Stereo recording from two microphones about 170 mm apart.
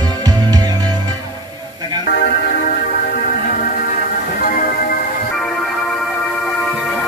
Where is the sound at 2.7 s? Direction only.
55° left (ahead or behind).